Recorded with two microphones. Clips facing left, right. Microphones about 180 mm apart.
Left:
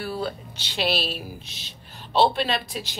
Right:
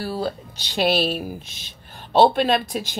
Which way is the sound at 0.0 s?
40° right (ahead or behind).